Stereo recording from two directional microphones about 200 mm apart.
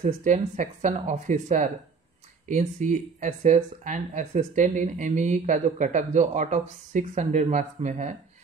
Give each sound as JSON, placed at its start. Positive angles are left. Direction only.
{"t": 0.0, "sound": "speech", "side_deg": -40}